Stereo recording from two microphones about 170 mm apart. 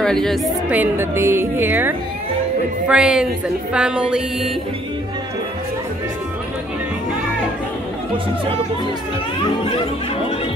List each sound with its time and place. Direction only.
0.0 s a woman's voice: 5° left (ahead or behind)
0.7 s a woman's voice: 10° right (ahead or behind)
2.9 s music: 5° right (ahead or behind)